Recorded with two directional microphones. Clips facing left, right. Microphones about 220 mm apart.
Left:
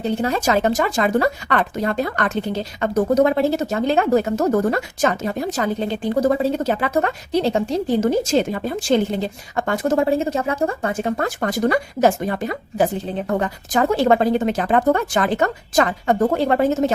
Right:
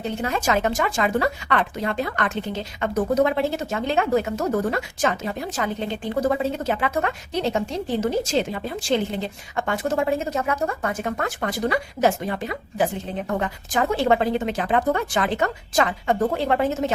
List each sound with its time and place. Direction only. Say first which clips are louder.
0.0 s speech: left 5 dB; 35° left (ahead or behind)